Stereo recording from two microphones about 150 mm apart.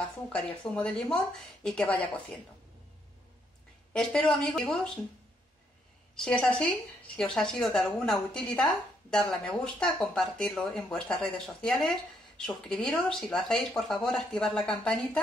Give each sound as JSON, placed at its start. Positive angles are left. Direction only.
{"t": 0.7, "sound": "speech", "side_deg": 5}
{"t": 3.9, "sound": "speech", "side_deg": 5}
{"t": 6.1, "sound": "speech", "side_deg": 5}